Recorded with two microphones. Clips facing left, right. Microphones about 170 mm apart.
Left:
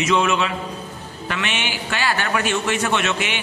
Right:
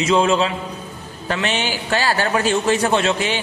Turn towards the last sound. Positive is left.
turn(degrees=-35)  # may be behind; listen again after turning